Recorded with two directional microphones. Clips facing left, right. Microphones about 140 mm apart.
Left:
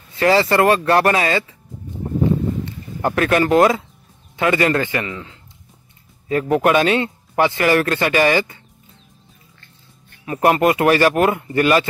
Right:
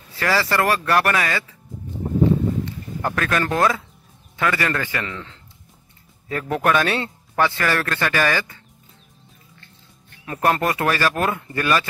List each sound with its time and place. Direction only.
0.2 s speech: 25° left (ahead or behind)
3.0 s speech: 25° left (ahead or behind)
5.0 s a man's voice: 10° left (ahead or behind)
10.4 s speech: 15° left (ahead or behind)